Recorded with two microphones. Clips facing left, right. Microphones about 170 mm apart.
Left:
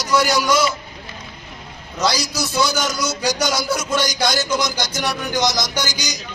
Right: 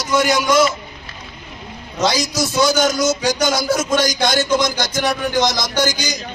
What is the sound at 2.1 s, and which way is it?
A man's voice, 45° right (ahead or behind).